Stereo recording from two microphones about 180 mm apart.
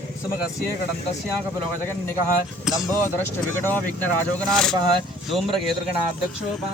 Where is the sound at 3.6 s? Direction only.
10° left (ahead or behind).